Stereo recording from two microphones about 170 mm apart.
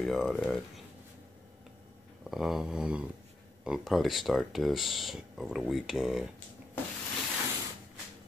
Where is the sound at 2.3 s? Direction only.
Centre (ahead or behind).